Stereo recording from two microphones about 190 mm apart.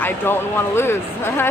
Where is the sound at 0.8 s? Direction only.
10° left (ahead or behind).